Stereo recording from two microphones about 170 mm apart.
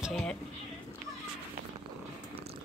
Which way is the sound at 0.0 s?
Centre (ahead or behind).